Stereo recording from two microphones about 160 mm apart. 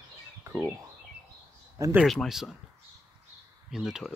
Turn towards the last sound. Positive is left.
turn(degrees=0)  # may be behind; listen again after turning